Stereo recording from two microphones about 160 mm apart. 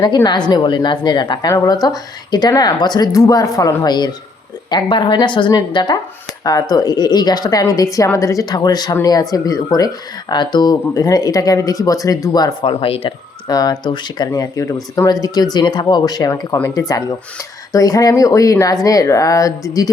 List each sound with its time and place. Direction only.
0.0 s a woman's voice: 25° left (ahead or behind)